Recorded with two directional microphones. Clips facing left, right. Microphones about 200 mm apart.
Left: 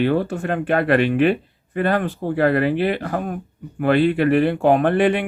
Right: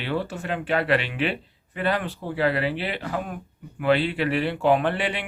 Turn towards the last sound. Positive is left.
turn(degrees=50)  # may be behind; listen again after turning